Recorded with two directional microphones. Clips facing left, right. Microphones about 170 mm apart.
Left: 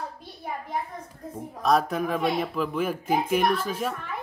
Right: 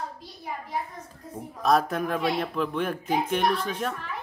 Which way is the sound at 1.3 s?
Centre (ahead or behind).